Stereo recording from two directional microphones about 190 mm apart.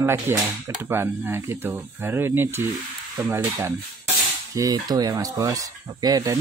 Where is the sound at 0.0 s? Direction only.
15° right (ahead or behind).